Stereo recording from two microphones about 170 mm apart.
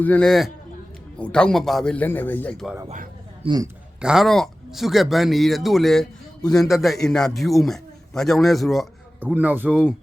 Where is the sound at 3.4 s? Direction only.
25° right (ahead or behind).